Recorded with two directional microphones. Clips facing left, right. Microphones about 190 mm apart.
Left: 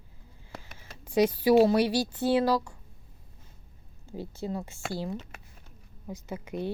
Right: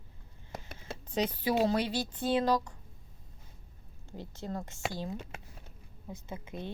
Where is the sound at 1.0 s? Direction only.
10° left (ahead or behind).